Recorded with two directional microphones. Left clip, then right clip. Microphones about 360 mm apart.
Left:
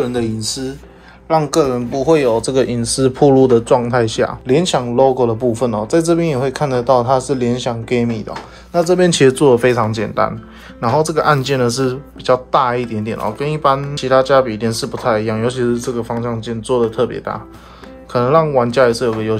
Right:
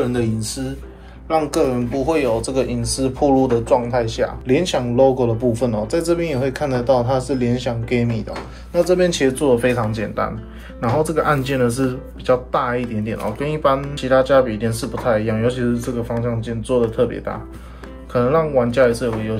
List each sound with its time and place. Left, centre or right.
0.1 s speech: centre